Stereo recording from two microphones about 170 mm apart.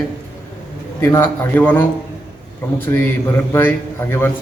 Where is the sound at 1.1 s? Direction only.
10° left (ahead or behind).